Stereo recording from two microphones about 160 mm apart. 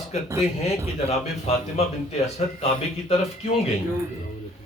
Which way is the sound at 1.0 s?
40° left (ahead or behind).